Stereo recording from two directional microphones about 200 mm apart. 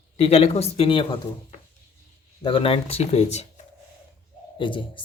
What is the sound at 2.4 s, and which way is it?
Speech, 25° left (ahead or behind).